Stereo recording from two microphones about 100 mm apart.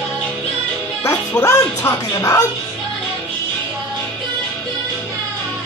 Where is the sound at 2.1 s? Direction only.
35° left (ahead or behind).